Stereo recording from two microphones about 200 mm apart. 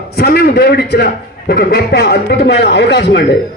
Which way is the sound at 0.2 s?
50° left (ahead or behind).